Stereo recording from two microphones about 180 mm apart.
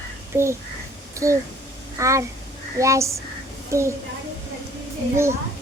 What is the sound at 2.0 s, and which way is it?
A child's voice, 15° right (ahead or behind).